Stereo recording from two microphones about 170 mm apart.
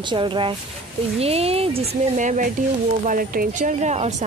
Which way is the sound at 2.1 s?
45° right (ahead or behind).